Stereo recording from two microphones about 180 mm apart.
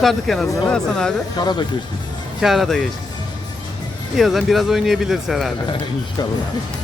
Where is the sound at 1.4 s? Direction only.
20° left (ahead or behind).